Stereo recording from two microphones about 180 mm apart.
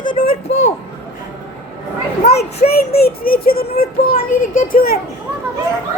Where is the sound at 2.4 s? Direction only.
60° left (ahead or behind).